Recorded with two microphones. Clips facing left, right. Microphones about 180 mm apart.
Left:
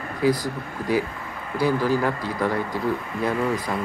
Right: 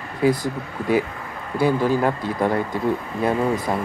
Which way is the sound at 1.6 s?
20° right (ahead or behind).